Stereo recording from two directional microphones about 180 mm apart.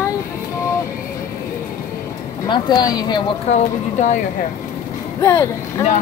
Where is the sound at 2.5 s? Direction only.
25° left (ahead or behind).